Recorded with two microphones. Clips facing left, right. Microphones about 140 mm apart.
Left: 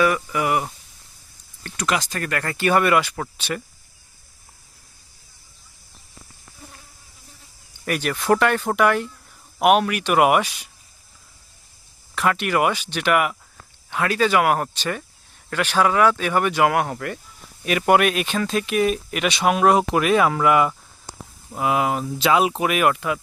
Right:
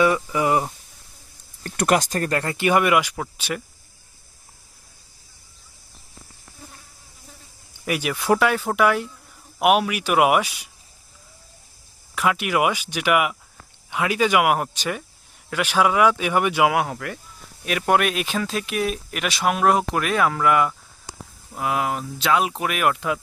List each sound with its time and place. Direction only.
0.0 s speech: 25° right (ahead or behind)
1.7 s speech: 55° right (ahead or behind); by 2.4 s 35° right (ahead or behind)
2.4 s speech: 20° right (ahead or behind)
7.9 s speech: 10° right (ahead or behind)
12.1 s speech: 10° right (ahead or behind)